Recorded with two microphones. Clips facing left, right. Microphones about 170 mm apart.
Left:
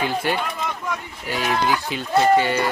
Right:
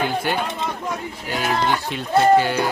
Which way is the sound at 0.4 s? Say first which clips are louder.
Right 1 dB; 30° right (ahead or behind).